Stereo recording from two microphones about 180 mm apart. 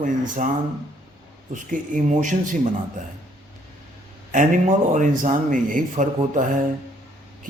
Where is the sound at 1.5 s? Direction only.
45° right (ahead or behind).